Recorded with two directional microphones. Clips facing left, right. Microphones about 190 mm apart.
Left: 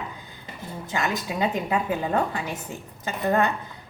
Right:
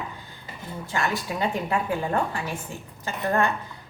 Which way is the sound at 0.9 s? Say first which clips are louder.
Even; 20° left (ahead or behind).